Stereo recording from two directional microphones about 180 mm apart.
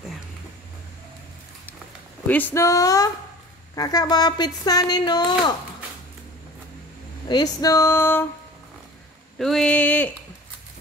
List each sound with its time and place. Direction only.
2.2 s female singing: 10° left (ahead or behind)
3.7 s speech: 20° left (ahead or behind)
7.2 s female singing: 20° left (ahead or behind)
9.4 s female singing: centre (ahead or behind)